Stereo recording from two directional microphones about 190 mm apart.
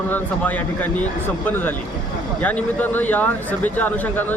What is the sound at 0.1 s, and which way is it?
Speech, 10° left (ahead or behind).